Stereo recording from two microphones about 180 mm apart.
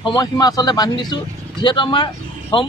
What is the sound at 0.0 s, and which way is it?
Speech, 25° left (ahead or behind).